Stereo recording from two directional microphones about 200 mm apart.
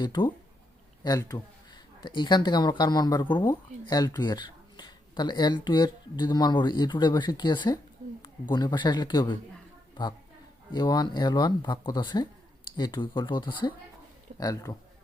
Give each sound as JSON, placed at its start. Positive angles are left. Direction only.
{"t": 0.0, "sound": "speech", "side_deg": 20}
{"t": 10.7, "sound": "a man's voice", "side_deg": 20}